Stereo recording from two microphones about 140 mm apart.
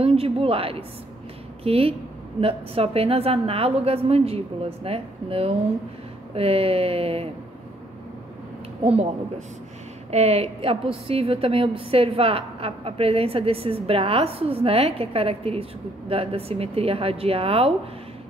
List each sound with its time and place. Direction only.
0.0 s a woman's voice: 45° right (ahead or behind)
10.1 s a woman's voice: 50° right (ahead or behind)